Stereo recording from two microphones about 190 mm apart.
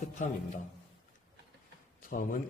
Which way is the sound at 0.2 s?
40° left (ahead or behind).